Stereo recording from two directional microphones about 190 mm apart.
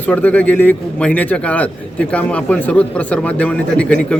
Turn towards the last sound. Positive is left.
turn(degrees=5)  # may be behind; listen again after turning